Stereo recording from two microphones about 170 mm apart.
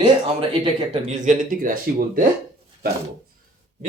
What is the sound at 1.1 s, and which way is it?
Speech, 45° right (ahead or behind).